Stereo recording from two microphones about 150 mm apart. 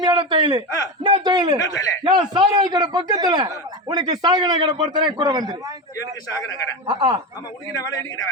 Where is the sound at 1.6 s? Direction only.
20° left (ahead or behind).